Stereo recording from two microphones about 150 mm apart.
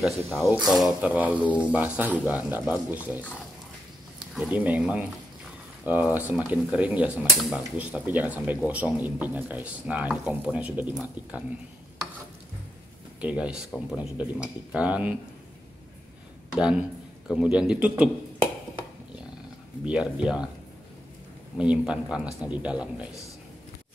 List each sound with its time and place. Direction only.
0.7 s speech: 5° right (ahead or behind)
4.4 s speech: 10° right (ahead or behind)
13.2 s speech: 10° right (ahead or behind)
16.5 s a man's voice: 5° right (ahead or behind)
19.8 s speech: 5° right (ahead or behind)
21.5 s speech: 5° right (ahead or behind)